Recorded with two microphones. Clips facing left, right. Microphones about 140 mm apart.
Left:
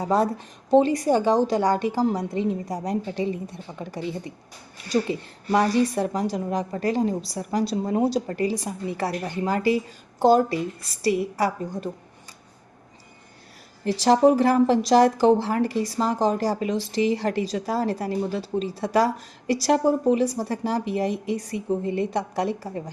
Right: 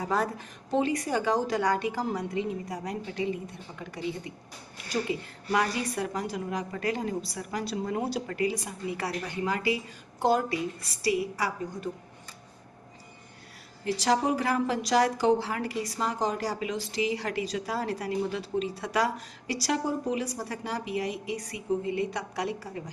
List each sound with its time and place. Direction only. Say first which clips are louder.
0.0 s a woman's voice: left 6 dB; 25° left (ahead or behind)
2.1 s speech: left 5 dB; 40° left (ahead or behind)
5.0 s speech: left 4 dB; 40° left (ahead or behind)
14.0 s speech: left 9 dB; 40° left (ahead or behind)
22.2 s a woman's voice: left 6 dB; 45° left (ahead or behind)